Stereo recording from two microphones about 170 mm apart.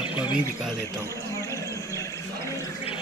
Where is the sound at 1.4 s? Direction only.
20° left (ahead or behind).